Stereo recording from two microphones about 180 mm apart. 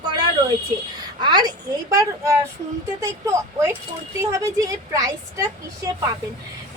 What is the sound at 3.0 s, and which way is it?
A woman's voice, 15° right (ahead or behind).